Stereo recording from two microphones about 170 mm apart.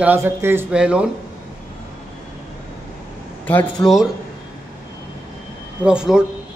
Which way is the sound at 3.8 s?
15° left (ahead or behind).